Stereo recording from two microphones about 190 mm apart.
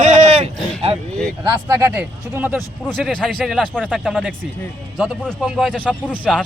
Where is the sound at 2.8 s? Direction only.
5° left (ahead or behind).